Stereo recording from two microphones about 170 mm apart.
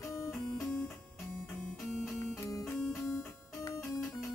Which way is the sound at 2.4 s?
20° left (ahead or behind).